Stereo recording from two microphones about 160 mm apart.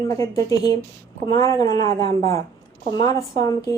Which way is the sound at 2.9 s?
20° left (ahead or behind).